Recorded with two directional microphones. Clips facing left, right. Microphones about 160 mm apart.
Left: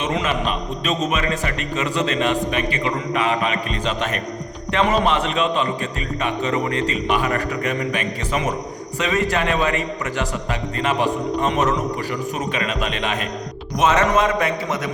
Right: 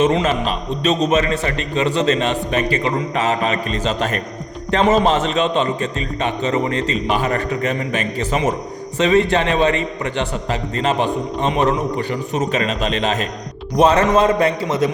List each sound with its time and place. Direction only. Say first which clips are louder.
0.0 s a man's voice: right 6 dB; 30° right (ahead or behind)